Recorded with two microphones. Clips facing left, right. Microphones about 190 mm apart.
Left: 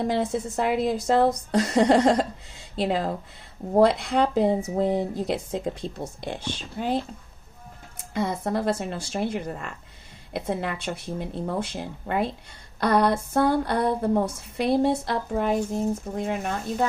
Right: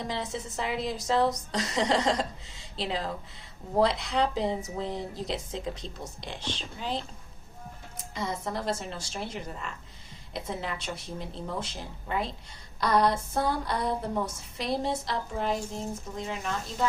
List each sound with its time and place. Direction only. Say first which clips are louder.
0.0 s speech: left 9 dB; 55° left (ahead or behind)
8.1 s a woman's voice: left 7 dB; 55° left (ahead or behind)